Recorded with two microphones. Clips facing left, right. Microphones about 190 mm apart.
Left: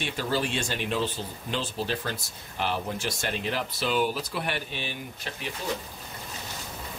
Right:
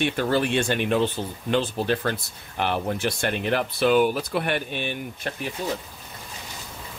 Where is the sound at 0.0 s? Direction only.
60° right (ahead or behind).